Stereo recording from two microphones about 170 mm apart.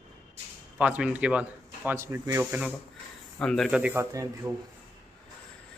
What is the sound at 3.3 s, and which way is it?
Speech, 5° left (ahead or behind).